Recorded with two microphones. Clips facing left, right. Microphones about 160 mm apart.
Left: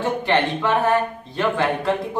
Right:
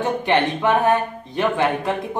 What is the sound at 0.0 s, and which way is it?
Speech, 20° right (ahead or behind).